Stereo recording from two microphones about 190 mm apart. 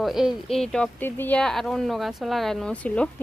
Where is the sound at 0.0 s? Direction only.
Centre (ahead or behind).